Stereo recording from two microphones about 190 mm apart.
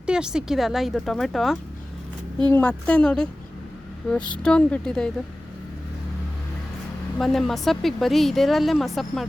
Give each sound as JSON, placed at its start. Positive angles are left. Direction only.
{"t": 0.0, "sound": "speech", "side_deg": -5}
{"t": 4.4, "sound": "speech", "side_deg": 5}
{"t": 7.2, "sound": "speech", "side_deg": 0}